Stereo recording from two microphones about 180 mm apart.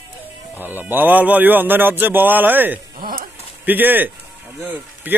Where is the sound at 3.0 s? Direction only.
55° right (ahead or behind).